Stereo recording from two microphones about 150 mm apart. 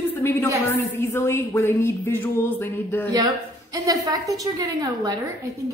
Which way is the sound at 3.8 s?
25° right (ahead or behind).